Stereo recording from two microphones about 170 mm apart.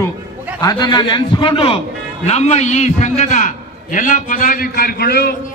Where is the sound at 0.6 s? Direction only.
25° left (ahead or behind).